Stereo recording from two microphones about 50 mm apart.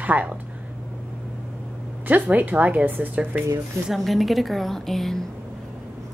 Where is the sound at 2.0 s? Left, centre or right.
Right.